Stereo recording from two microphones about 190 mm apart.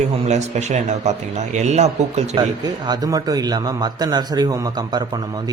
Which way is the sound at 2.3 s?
20° right (ahead or behind).